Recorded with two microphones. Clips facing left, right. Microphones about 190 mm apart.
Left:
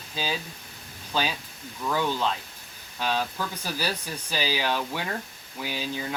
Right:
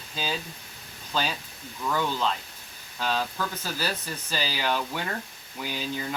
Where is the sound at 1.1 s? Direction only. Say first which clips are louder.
Left 1 dB; 10° left (ahead or behind).